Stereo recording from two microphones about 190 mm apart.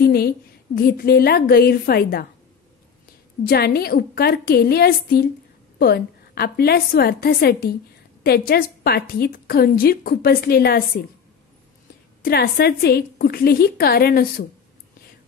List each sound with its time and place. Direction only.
0.0 s a sound: 55° left (ahead or behind)
0.7 s a woman's voice: 55° left (ahead or behind)
3.4 s a woman's voice: 55° left (ahead or behind)
12.2 s a woman's voice: 55° left (ahead or behind)